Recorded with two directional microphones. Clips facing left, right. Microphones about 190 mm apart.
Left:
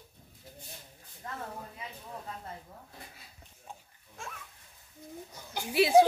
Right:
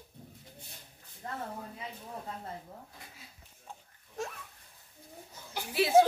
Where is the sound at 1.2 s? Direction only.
35° right (ahead or behind).